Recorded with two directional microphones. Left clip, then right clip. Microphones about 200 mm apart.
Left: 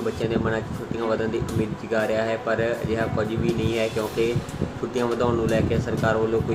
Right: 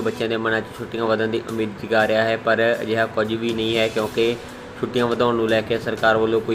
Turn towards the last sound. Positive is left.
turn(degrees=-25)  # may be behind; listen again after turning